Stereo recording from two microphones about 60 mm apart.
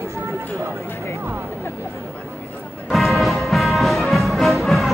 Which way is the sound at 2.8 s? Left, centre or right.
Centre.